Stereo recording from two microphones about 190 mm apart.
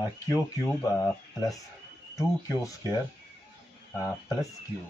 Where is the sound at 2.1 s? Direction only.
20° left (ahead or behind).